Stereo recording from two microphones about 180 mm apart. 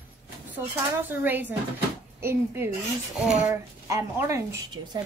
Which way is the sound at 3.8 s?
15° right (ahead or behind).